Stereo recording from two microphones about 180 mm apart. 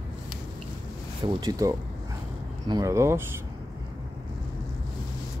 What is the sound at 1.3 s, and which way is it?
Speech, 20° right (ahead or behind).